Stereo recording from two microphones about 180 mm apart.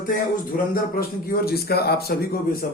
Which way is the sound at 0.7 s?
55° left (ahead or behind).